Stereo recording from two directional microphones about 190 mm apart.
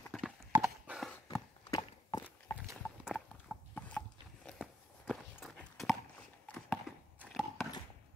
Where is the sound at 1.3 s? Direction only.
20° left (ahead or behind).